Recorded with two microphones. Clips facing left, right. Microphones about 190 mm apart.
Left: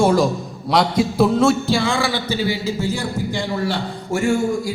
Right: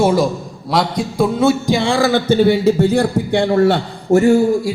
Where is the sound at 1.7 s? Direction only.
25° right (ahead or behind).